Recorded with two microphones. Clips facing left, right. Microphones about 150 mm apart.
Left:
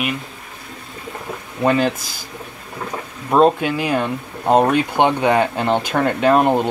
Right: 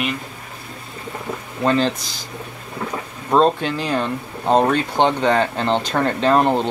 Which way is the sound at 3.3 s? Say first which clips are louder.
Left 2 dB; 10° left (ahead or behind).